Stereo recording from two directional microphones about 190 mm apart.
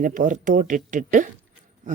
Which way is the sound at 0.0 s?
40° right (ahead or behind).